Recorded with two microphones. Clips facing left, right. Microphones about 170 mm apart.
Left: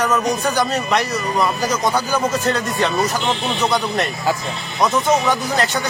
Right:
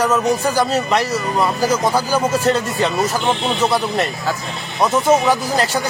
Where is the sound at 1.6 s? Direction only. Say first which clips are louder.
Right 3 dB; 30° right (ahead or behind).